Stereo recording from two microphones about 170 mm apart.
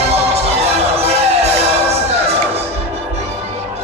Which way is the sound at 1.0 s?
40° right (ahead or behind).